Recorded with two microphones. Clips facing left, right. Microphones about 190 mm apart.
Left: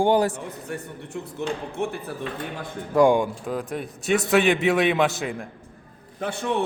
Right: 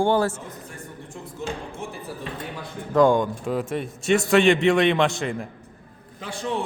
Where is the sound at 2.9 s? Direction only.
10° left (ahead or behind).